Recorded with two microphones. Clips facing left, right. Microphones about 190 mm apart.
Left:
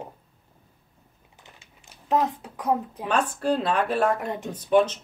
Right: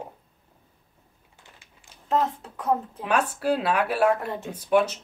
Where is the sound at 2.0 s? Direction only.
15° left (ahead or behind).